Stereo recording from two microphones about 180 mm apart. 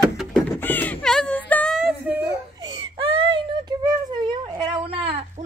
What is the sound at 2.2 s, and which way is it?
Baby cry, 25° right (ahead or behind).